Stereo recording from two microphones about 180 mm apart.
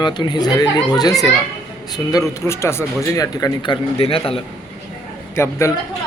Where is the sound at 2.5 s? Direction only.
15° left (ahead or behind); by 4.4 s 30° left (ahead or behind).